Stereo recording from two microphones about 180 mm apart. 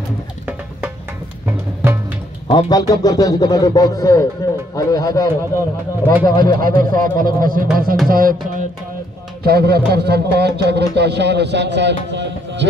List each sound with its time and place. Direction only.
2.5 s speech: 20° left (ahead or behind)
6.6 s a man's voice: 50° right (ahead or behind); by 12.6 s 75° right (ahead or behind)